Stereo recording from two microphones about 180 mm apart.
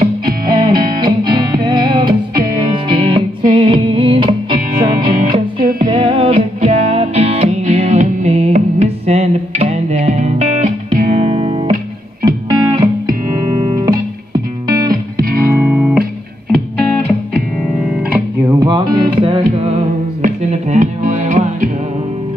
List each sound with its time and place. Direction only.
0.5 s music: 25° right (ahead or behind); by 11.1 s 45° right (ahead or behind)
11.1 s music: 30° right (ahead or behind)
12.3 s music: 20° right (ahead or behind)
14.7 s music: 20° right (ahead or behind)
18.6 s music: 25° right (ahead or behind); by 21.6 s 40° right (ahead or behind)